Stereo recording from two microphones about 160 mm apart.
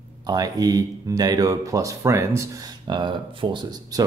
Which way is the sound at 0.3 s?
25° right (ahead or behind).